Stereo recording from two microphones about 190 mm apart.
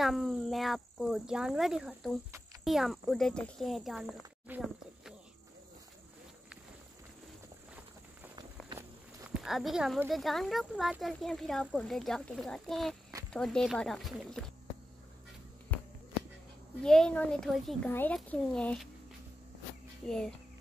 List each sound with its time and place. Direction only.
0.0 s speech: centre (ahead or behind)
8.4 s walk: 15° right (ahead or behind)
9.3 s speech: centre (ahead or behind)
15.7 s a sound: 10° left (ahead or behind)
16.8 s speech: 5° left (ahead or behind)
20.1 s speech: 5° left (ahead or behind)